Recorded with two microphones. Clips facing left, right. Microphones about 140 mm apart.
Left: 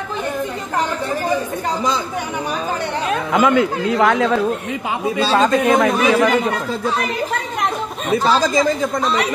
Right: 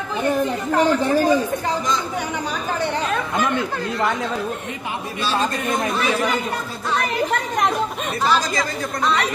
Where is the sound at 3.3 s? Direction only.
90° left.